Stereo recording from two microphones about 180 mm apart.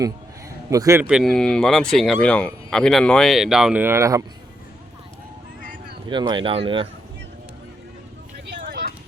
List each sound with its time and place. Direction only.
0.7 s speech: 15° right (ahead or behind)
6.1 s speech: 25° right (ahead or behind)
8.4 s a sound: 70° right (ahead or behind)